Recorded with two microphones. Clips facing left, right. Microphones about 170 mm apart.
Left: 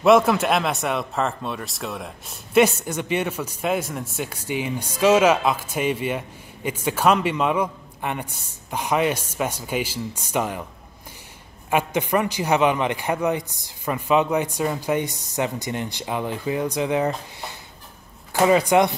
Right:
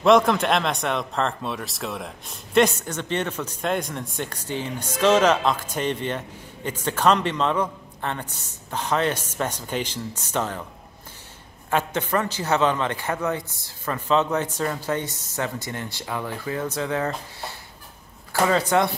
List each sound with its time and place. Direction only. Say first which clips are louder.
0.0 s speech: left 1 dB; 5° left (ahead or behind)
11.7 s speech: left 2 dB; 10° left (ahead or behind)